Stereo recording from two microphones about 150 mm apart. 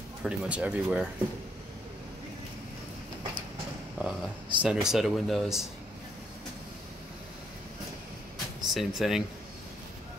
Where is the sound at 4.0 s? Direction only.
10° right (ahead or behind).